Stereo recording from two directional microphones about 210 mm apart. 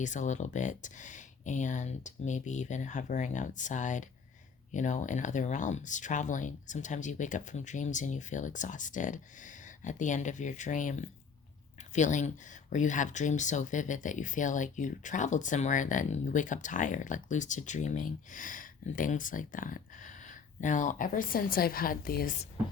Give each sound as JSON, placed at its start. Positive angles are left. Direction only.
{"t": 0.0, "sound": "speech", "side_deg": 35}